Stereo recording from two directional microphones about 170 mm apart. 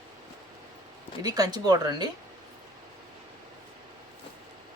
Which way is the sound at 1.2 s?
20° right (ahead or behind).